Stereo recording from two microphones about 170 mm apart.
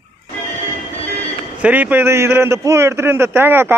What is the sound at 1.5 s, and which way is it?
Speech, 10° right (ahead or behind).